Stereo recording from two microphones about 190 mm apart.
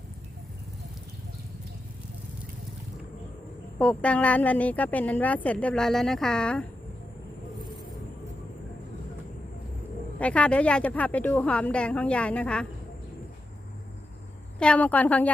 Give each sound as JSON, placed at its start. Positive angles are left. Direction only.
{"t": 3.8, "sound": "speech", "side_deg": 5}
{"t": 10.2, "sound": "speech", "side_deg": 5}
{"t": 14.6, "sound": "speech", "side_deg": 5}